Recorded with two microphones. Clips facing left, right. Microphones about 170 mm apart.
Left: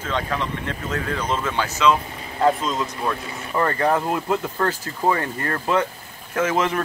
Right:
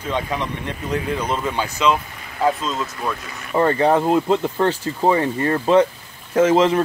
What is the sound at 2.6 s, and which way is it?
Speech, 10° left (ahead or behind).